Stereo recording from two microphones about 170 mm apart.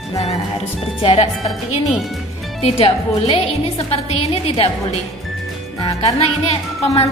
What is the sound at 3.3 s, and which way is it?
A woman's voice, 35° left (ahead or behind).